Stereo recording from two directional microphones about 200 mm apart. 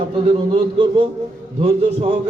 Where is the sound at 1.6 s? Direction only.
25° right (ahead or behind).